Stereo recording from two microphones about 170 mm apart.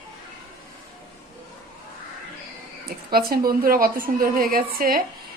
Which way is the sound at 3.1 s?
60° right (ahead or behind).